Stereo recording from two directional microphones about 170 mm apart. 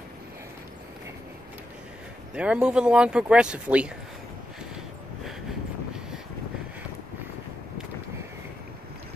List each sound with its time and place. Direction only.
2.3 s speech: 5° right (ahead or behind)